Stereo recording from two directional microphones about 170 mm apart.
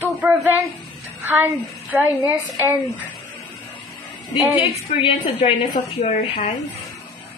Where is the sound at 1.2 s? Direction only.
10° right (ahead or behind).